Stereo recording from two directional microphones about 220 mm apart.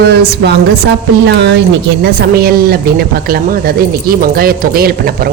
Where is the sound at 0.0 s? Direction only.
50° right (ahead or behind).